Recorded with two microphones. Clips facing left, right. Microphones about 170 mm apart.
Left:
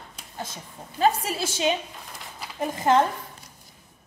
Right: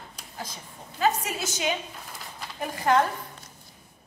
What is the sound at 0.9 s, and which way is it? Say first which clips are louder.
A woman's voice: left 3 dB; 30° left (ahead or behind).